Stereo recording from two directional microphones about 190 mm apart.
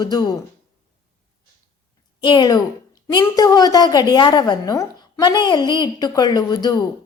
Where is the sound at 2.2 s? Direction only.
25° left (ahead or behind).